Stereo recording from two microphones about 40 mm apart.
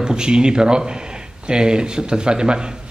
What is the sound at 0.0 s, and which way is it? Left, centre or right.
A man's voice, right.